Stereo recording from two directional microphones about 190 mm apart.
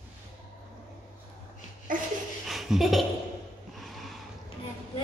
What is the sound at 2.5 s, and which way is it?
Laughter, centre (ahead or behind).